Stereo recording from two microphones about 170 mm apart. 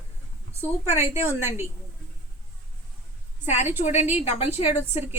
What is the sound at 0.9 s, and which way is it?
Speech, 15° right (ahead or behind).